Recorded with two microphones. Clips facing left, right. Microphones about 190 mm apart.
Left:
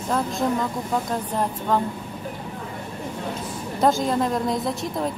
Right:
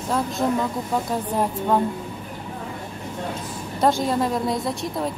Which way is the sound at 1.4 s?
10° right (ahead or behind).